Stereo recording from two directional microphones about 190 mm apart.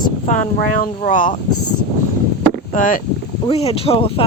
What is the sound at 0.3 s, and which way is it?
Speech, 45° left (ahead or behind).